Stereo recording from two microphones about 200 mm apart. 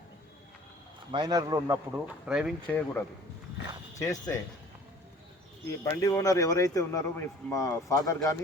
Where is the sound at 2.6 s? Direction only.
10° left (ahead or behind).